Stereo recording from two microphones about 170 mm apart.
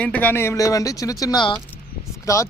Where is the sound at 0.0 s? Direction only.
10° left (ahead or behind).